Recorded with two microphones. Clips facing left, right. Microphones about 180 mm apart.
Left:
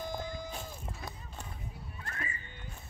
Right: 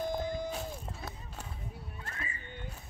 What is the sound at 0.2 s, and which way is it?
Music, 55° right (ahead or behind).